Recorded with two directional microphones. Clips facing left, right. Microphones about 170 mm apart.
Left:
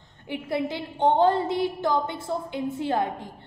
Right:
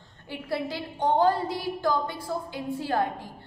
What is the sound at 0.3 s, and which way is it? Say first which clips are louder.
A woman's voice: left 3 dB; 20° left (ahead or behind).